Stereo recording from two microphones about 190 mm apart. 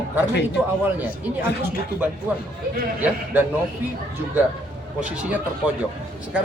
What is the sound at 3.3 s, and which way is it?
Speech, 10° right (ahead or behind).